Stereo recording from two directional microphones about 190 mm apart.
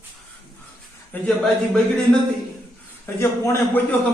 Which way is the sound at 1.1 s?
10° left (ahead or behind).